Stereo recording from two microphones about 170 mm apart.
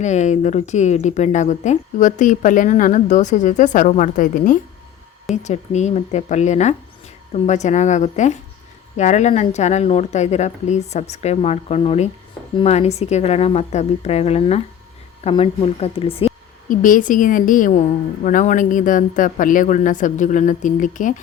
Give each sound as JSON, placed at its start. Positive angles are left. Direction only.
{"t": 0.0, "sound": "a woman's voice", "side_deg": 45}
{"t": 16.6, "sound": "speech", "side_deg": 50}